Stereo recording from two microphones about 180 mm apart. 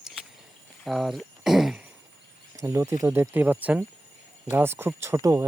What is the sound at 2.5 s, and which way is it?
Speech, 15° right (ahead or behind).